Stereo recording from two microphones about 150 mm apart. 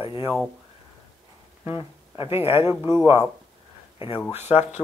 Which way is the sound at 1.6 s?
15° right (ahead or behind).